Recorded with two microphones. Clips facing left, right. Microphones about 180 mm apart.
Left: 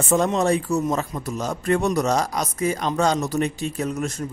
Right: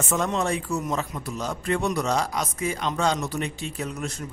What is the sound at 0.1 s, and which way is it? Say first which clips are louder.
A man's voice: left 6 dB; 35° left (ahead or behind).